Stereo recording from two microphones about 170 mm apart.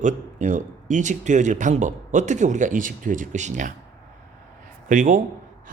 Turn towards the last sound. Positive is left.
turn(degrees=-50)  # may be behind; listen again after turning